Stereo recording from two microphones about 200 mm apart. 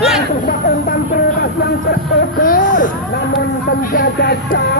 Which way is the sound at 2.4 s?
45° left (ahead or behind).